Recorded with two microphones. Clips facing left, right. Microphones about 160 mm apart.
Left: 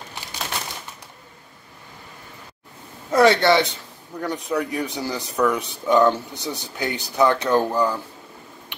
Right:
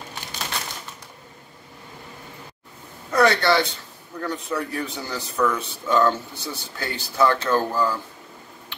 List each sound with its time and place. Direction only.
3.1 s speech: 25° left (ahead or behind)